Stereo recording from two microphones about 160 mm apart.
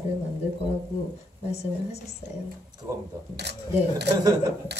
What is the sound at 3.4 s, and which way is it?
Speech, 90° right.